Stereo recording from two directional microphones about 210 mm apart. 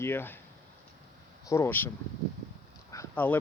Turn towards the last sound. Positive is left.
turn(degrees=10)  # may be behind; listen again after turning